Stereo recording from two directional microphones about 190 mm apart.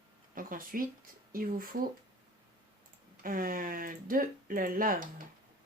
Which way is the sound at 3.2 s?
50° right (ahead or behind).